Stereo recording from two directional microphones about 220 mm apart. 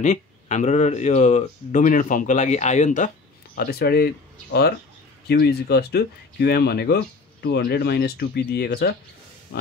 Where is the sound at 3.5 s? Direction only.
45° left (ahead or behind).